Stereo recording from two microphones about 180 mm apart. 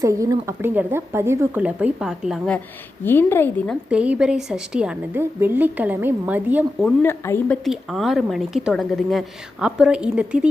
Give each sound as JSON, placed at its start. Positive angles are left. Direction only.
{"t": 0.0, "sound": "a woman's voice", "side_deg": -20}
{"t": 3.0, "sound": "a woman's voice", "side_deg": 10}
{"t": 3.8, "sound": "a woman's voice", "side_deg": -5}
{"t": 6.8, "sound": "speech", "side_deg": 10}